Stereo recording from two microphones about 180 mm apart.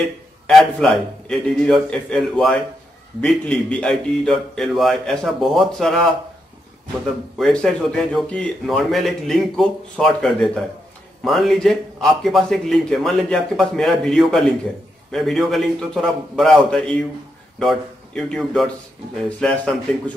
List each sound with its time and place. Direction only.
0.5 s a man's voice: centre (ahead or behind)
7.3 s a man's voice: centre (ahead or behind)